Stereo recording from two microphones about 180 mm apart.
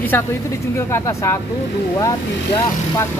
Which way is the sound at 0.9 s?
15° left (ahead or behind).